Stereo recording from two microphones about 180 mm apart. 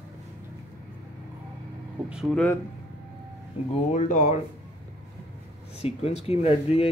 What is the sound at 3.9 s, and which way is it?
Speech, 45° left (ahead or behind).